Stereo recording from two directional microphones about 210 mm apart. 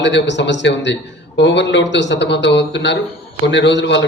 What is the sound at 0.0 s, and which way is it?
A man's voice, 60° left (ahead or behind).